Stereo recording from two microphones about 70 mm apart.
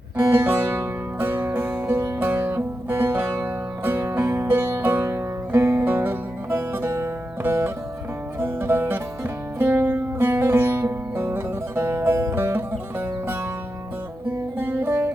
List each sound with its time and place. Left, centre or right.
0.2 s music: right
14.6 s music: right